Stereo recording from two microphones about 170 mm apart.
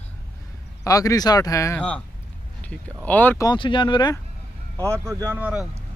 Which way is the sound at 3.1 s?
10° left (ahead or behind).